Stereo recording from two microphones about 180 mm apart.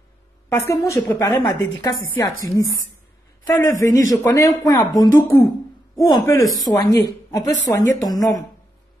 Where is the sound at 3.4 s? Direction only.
15° left (ahead or behind).